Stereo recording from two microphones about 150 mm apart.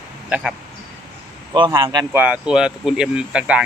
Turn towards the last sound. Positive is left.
turn(degrees=-5)  # may be behind; listen again after turning